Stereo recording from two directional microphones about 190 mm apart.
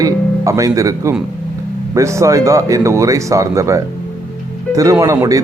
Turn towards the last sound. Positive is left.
turn(degrees=-15)  # may be behind; listen again after turning